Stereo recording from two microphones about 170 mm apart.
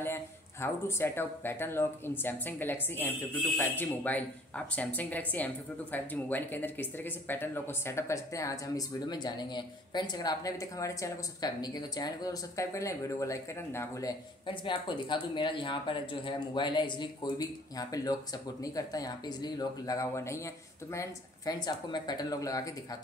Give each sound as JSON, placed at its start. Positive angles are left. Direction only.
{"t": 0.0, "sound": "speech", "side_deg": 15}
{"t": 14.4, "sound": "speech", "side_deg": 30}